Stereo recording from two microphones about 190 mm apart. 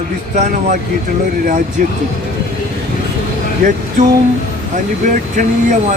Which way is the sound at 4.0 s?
40° right (ahead or behind).